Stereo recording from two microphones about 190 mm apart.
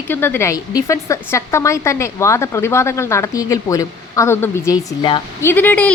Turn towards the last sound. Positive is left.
turn(degrees=10)  # may be behind; listen again after turning